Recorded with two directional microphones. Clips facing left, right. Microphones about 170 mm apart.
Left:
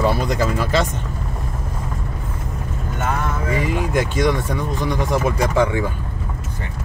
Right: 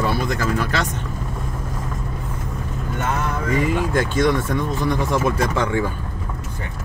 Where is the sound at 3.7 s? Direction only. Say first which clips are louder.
Even; 10° left (ahead or behind).